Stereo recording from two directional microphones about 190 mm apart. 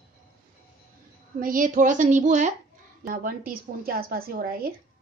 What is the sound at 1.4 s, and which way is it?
A woman's voice, 45° right (ahead or behind).